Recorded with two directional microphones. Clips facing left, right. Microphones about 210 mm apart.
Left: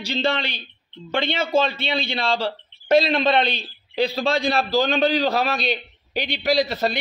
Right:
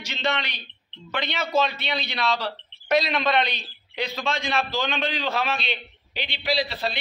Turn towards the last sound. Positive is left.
turn(degrees=45)  # may be behind; listen again after turning